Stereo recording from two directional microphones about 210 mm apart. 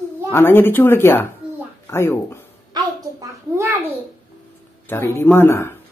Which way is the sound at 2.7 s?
15° right (ahead or behind).